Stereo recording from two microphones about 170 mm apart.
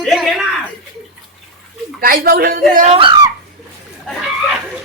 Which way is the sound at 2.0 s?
60° right (ahead or behind).